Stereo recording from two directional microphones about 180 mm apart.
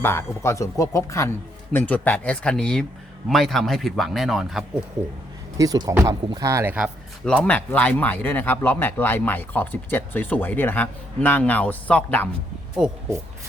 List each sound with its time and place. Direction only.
0.0 s speech: 15° left (ahead or behind)
5.5 s speech: 20° right (ahead or behind)
7.3 s speech: 10° left (ahead or behind)
12.7 s speech: 5° right (ahead or behind)